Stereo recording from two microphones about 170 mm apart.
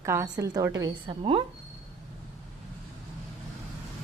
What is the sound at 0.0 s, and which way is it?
A woman's voice, 15° right (ahead or behind).